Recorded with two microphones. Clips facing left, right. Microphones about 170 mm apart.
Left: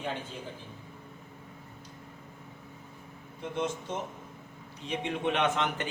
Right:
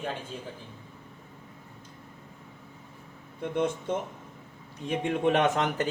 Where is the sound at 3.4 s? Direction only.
55° right (ahead or behind).